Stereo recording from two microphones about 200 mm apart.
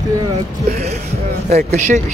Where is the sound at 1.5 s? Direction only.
35° right (ahead or behind).